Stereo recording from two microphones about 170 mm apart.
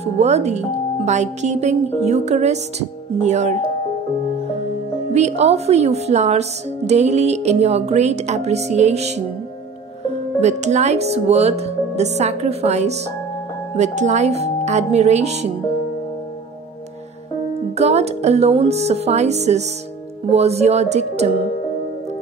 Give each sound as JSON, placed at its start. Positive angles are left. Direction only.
{"t": 0.0, "sound": "speech", "side_deg": -40}
{"t": 5.1, "sound": "speech", "side_deg": -40}
{"t": 10.4, "sound": "speech", "side_deg": -40}
{"t": 17.7, "sound": "speech", "side_deg": -40}